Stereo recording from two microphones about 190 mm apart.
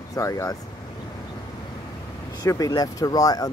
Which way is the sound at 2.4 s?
20° left (ahead or behind).